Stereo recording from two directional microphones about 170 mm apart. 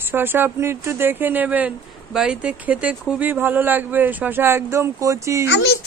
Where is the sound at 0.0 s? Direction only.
10° right (ahead or behind).